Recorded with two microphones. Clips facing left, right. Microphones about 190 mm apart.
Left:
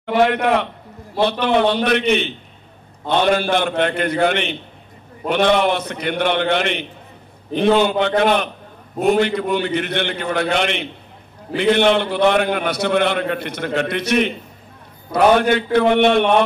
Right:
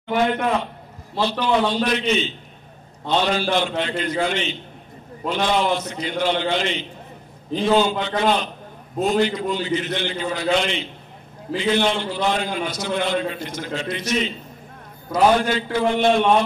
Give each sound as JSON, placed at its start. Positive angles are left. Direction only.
{"t": 0.0, "sound": "a man's voice", "side_deg": 70}
{"t": 1.1, "sound": "a man's voice", "side_deg": 60}